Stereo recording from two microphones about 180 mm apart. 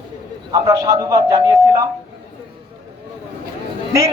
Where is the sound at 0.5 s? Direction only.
20° right (ahead or behind).